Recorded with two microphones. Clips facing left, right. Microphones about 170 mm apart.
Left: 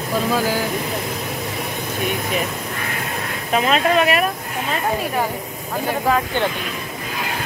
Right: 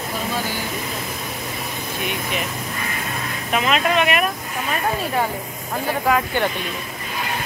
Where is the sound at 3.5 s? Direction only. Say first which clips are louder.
Left 3 dB; 35° left (ahead or behind).